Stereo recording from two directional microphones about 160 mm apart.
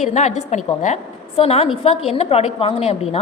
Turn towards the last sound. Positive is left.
turn(degrees=40)  # may be behind; listen again after turning